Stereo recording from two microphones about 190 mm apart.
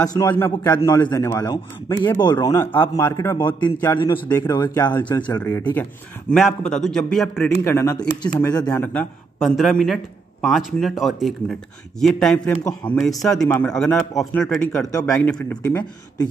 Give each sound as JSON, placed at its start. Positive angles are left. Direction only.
{"t": 0.0, "sound": "a man's voice", "side_deg": 20}
{"t": 6.3, "sound": "a man's voice", "side_deg": 5}
{"t": 14.9, "sound": "a man's voice", "side_deg": 20}
{"t": 15.3, "sound": "speech", "side_deg": 5}